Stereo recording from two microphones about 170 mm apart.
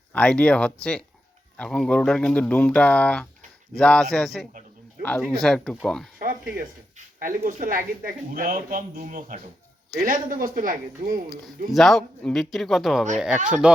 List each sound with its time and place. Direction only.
0.1 s speech: 5° left (ahead or behind)
6.1 s speech: 55° right (ahead or behind)
11.7 s speech: centre (ahead or behind)